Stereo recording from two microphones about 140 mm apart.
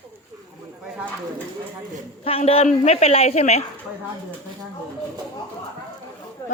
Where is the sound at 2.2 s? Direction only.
45° left (ahead or behind).